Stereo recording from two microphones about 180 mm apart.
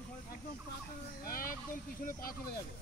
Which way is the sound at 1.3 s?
50° left (ahead or behind).